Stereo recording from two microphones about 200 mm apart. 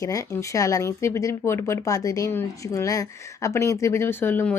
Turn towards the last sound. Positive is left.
turn(degrees=10)  # may be behind; listen again after turning